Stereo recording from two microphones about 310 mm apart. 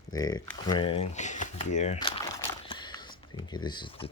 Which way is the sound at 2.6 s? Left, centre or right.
Centre.